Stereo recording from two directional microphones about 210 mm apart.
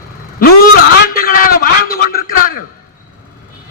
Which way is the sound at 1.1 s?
45° left (ahead or behind).